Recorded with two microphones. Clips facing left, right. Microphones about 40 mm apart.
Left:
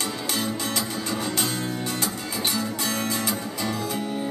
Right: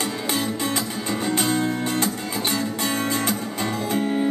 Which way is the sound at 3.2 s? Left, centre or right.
Right.